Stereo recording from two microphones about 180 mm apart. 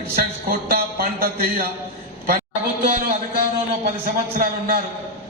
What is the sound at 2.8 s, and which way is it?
Speech, 50° right (ahead or behind).